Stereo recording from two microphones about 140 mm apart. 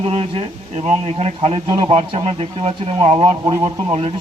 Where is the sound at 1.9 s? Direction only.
40° right (ahead or behind).